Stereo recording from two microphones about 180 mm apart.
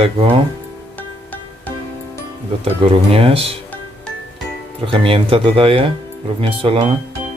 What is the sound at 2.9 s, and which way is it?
Speech, 30° right (ahead or behind).